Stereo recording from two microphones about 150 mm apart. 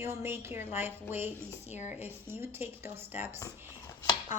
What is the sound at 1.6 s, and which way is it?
Speech, 50° left (ahead or behind).